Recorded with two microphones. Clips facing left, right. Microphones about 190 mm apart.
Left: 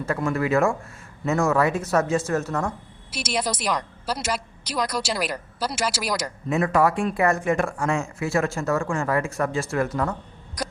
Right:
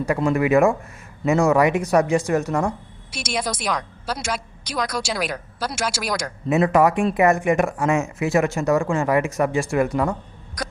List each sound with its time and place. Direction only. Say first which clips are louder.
0.0 s speech: right 4 dB; 15° right (ahead or behind)
3.2 s a woman's voice: even; 5° left (ahead or behind)
6.5 s speech: right 4 dB; 20° right (ahead or behind)